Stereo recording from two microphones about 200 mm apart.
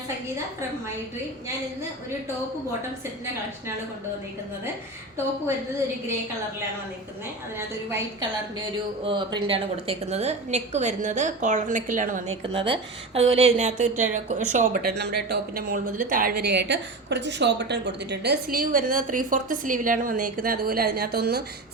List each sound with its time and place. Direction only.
7.9 s a woman's voice: 15° right (ahead or behind); by 12.2 s 40° right (ahead or behind)
12.4 s a woman's voice: 25° right (ahead or behind); by 21.4 s 50° right (ahead or behind)